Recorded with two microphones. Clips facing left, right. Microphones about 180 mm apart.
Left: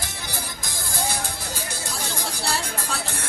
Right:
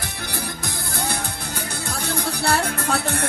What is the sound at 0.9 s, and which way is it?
Music, 60° right (ahead or behind).